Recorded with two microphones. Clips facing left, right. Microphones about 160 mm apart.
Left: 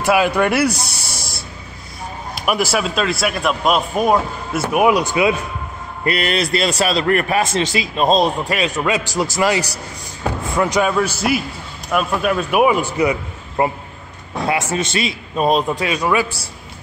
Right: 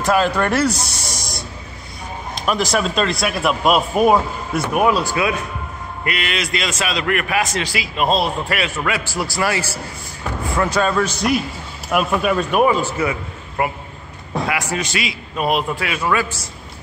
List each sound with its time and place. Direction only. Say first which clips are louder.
0.0 s a man's voice: left 2 dB; 10° left (ahead or behind)
4.7 s a man's voice: left 3 dB; 15° left (ahead or behind)
6.0 s a man's voice: left 5 dB; 35° left (ahead or behind)
15.7 s a man's voice: left 2 dB; 20° left (ahead or behind)